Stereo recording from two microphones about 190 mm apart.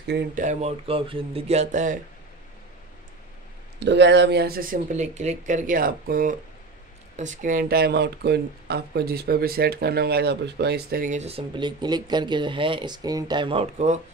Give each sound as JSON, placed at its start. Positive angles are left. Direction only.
{"t": 0.1, "sound": "speech", "side_deg": -45}
{"t": 3.8, "sound": "speech", "side_deg": -65}